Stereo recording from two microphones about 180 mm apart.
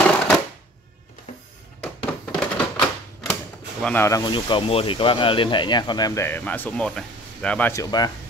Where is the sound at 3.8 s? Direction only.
10° left (ahead or behind).